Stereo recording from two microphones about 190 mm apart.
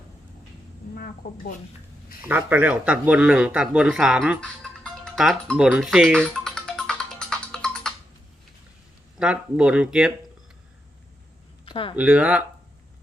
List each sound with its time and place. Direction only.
0.9 s a woman's voice: 50° left (ahead or behind)
2.2 s speech: 10° right (ahead or behind)
5.7 s music: 5° right (ahead or behind)
9.1 s speech: 5° right (ahead or behind)
11.6 s a sound: 25° left (ahead or behind)
11.9 s speech: 5° right (ahead or behind)